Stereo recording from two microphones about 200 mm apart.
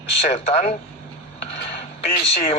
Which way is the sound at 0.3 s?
40° left (ahead or behind).